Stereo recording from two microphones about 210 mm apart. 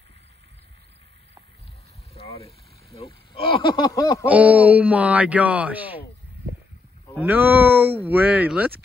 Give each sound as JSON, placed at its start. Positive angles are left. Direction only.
{"t": 2.1, "sound": "speech", "side_deg": 30}
{"t": 4.3, "sound": "speech", "side_deg": -5}
{"t": 7.2, "sound": "speech", "side_deg": -10}